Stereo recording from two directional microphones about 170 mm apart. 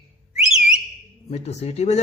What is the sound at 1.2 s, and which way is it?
Speech, 40° left (ahead or behind).